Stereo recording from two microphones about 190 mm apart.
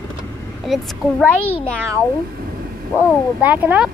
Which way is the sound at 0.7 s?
Centre (ahead or behind).